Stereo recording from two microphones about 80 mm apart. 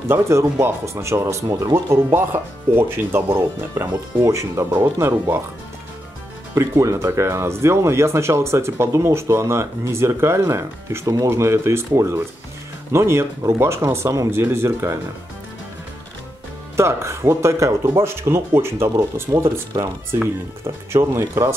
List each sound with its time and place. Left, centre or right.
0.1 s speech: right
6.5 s speech: right
16.7 s speech: right
19.3 s speech: right